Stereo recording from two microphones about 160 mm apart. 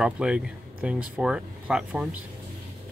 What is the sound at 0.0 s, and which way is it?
Speech, 5° right (ahead or behind).